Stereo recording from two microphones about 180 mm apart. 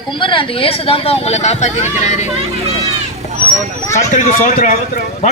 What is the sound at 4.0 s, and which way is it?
A man's voice, 45° left (ahead or behind).